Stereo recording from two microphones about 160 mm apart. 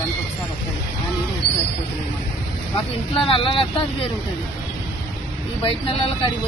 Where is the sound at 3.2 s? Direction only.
30° left (ahead or behind).